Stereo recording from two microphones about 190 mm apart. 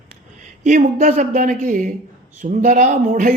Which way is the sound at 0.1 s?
40° right (ahead or behind).